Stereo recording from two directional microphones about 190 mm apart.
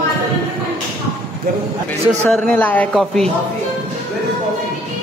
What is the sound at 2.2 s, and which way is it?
Speech, 5° left (ahead or behind).